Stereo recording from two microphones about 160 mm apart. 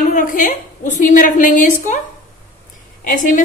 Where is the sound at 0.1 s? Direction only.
55° left (ahead or behind).